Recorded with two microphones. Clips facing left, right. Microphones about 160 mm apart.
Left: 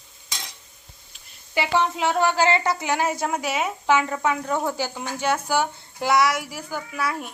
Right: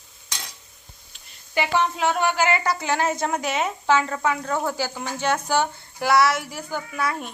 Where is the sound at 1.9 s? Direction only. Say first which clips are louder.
Left 1 dB; 25° left (ahead or behind).